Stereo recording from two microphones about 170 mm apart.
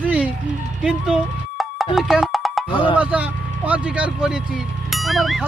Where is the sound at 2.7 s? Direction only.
30° left (ahead or behind).